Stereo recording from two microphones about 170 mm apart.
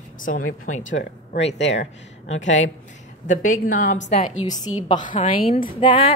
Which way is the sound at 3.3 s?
50° left (ahead or behind).